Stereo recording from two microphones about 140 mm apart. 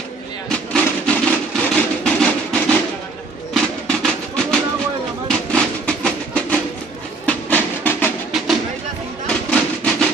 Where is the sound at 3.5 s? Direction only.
5° left (ahead or behind).